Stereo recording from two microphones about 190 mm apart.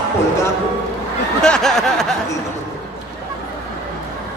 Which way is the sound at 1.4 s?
Centre (ahead or behind).